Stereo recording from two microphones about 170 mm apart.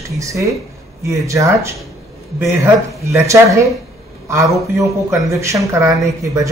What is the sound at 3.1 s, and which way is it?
Speech, 20° right (ahead or behind).